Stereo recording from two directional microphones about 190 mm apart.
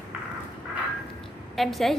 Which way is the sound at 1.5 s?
Centre (ahead or behind).